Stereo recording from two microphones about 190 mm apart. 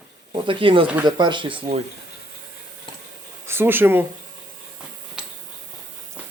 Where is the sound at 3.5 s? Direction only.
10° right (ahead or behind).